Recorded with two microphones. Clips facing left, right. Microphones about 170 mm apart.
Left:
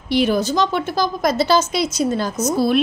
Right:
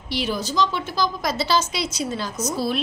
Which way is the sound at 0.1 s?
55° left (ahead or behind).